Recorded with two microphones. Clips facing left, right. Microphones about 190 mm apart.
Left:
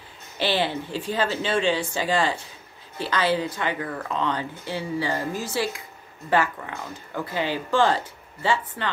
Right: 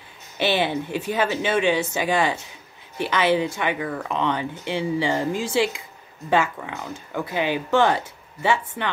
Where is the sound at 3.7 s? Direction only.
5° right (ahead or behind).